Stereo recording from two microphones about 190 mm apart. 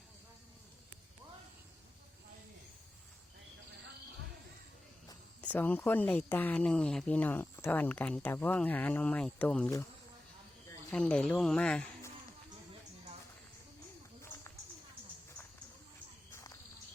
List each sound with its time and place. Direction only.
5.4 s speech: 10° left (ahead or behind)
10.9 s speech: 5° left (ahead or behind)
14.2 s run: 15° left (ahead or behind)
16.3 s walk: 15° left (ahead or behind)